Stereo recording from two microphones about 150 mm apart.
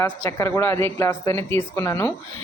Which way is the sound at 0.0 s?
15° left (ahead or behind).